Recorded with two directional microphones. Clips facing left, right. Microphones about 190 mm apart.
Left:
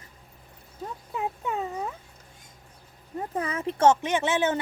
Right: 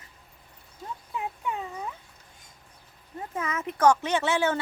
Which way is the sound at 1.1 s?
35° left (ahead or behind).